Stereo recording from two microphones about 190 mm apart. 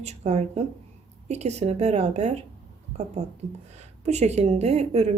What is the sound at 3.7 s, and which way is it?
Speech, 35° right (ahead or behind).